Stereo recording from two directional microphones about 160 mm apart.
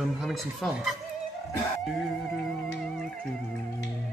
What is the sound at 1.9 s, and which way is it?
A man's voice, centre (ahead or behind).